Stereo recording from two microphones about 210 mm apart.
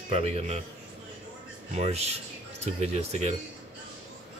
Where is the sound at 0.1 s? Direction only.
30° right (ahead or behind).